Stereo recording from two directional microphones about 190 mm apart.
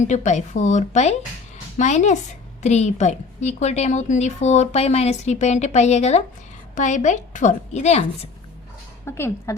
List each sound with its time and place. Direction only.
0.1 s a woman's voice: 40° left (ahead or behind)
9.0 s a woman's voice: 15° left (ahead or behind)